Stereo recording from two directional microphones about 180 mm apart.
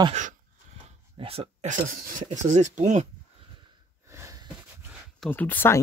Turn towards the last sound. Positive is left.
turn(degrees=10)  # may be behind; listen again after turning